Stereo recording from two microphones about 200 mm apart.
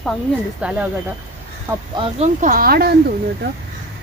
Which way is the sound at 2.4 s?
45° right (ahead or behind).